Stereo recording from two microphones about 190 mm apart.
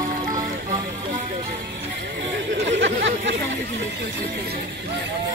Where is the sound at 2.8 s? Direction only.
70° right (ahead or behind).